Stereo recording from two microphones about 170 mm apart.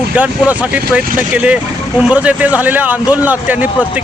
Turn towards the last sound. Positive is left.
turn(degrees=-10)  # may be behind; listen again after turning